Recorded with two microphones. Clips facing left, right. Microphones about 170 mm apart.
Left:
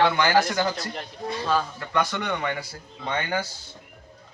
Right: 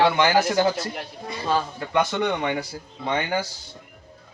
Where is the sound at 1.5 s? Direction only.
20° right (ahead or behind).